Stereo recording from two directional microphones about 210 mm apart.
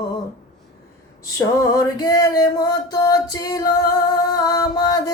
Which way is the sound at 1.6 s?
15° left (ahead or behind).